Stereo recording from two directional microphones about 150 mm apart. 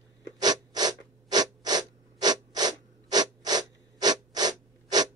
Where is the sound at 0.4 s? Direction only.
25° right (ahead or behind).